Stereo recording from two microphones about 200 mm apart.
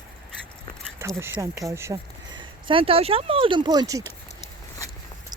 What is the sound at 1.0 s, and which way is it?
Speech, 15° right (ahead or behind).